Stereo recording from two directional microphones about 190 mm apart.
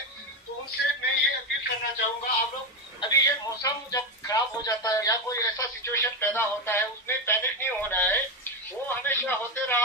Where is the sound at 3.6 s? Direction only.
20° left (ahead or behind).